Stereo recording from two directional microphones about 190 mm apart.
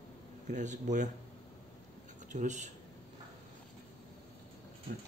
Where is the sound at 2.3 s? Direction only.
40° right (ahead or behind).